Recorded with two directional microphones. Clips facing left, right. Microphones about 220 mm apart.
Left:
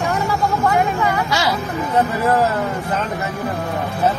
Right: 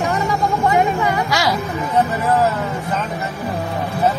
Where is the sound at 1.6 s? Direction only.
Centre (ahead or behind).